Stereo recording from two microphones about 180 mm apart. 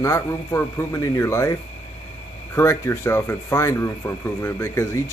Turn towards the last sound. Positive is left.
turn(degrees=15)  # may be behind; listen again after turning